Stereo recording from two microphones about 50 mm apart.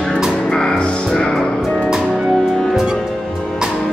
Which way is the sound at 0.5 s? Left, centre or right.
Centre.